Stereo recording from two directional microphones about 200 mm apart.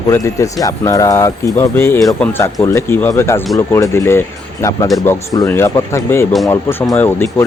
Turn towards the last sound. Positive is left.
turn(degrees=15)  # may be behind; listen again after turning